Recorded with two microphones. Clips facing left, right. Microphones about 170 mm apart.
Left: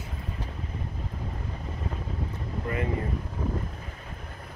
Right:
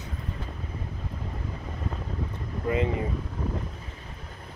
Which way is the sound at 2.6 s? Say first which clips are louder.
Right 5 dB; 20° right (ahead or behind).